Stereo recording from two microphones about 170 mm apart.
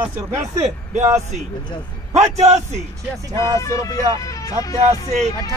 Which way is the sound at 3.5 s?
20° left (ahead or behind).